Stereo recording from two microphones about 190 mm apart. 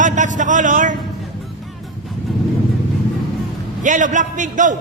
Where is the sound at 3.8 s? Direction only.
40° right (ahead or behind).